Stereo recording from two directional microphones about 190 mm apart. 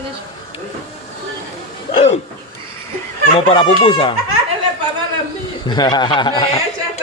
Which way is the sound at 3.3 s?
30° left (ahead or behind).